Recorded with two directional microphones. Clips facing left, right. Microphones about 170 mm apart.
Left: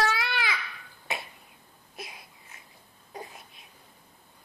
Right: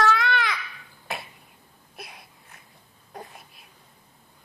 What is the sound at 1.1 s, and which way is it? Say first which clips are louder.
Finger snapping: right 1 dB; centre (ahead or behind).